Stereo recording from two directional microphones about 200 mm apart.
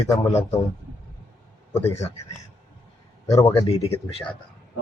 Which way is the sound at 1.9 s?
15° left (ahead or behind).